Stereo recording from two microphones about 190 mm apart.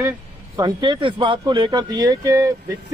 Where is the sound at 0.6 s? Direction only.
25° right (ahead or behind).